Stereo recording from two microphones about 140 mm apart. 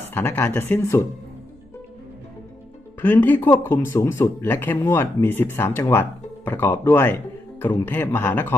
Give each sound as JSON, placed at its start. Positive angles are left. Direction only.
{"t": 0.1, "sound": "speech", "side_deg": 15}
{"t": 3.0, "sound": "speech", "side_deg": 15}